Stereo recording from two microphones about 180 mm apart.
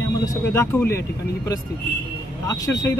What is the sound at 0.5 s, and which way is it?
Speech, 15° left (ahead or behind).